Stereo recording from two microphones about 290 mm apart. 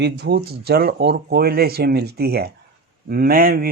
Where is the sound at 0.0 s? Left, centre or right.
Right.